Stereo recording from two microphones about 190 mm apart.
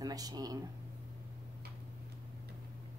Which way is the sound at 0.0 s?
20° right (ahead or behind).